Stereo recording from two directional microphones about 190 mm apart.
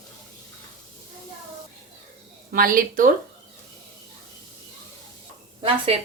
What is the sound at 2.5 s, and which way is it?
Speech, 45° right (ahead or behind).